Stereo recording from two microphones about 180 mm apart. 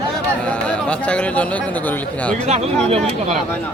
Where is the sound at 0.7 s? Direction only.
5° left (ahead or behind).